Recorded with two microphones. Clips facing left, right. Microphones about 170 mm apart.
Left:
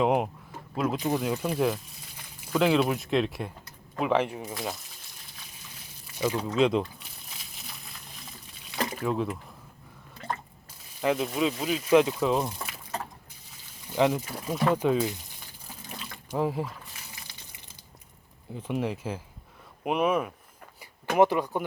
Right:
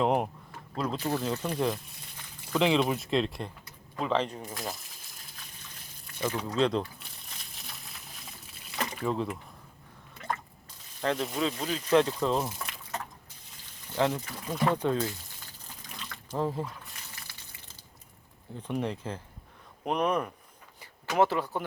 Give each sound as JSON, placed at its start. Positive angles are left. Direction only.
{"t": 0.0, "sound": "a sound", "side_deg": 5}
{"t": 0.7, "sound": "speech", "side_deg": 10}
{"t": 6.1, "sound": "speech", "side_deg": 10}
{"t": 7.3, "sound": "a sound", "side_deg": 0}
{"t": 9.0, "sound": "speech", "side_deg": 5}
{"t": 11.0, "sound": "speech", "side_deg": 5}
{"t": 12.9, "sound": "a sound", "side_deg": 35}
{"t": 13.9, "sound": "speech", "side_deg": 15}
{"t": 16.1, "sound": "speech", "side_deg": 10}
{"t": 18.5, "sound": "speech", "side_deg": 5}
{"t": 21.2, "sound": "speech", "side_deg": 15}